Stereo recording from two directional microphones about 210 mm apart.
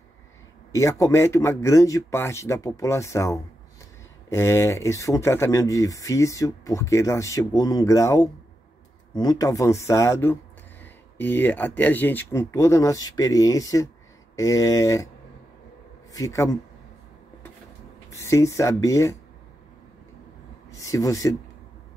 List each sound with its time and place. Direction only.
0.7 s speech: 15° left (ahead or behind)
16.1 s a man's voice: 15° left (ahead or behind)
18.1 s speech: 15° left (ahead or behind)
20.7 s speech: 15° left (ahead or behind)